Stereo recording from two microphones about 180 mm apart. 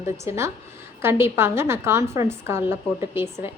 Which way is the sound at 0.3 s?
15° right (ahead or behind).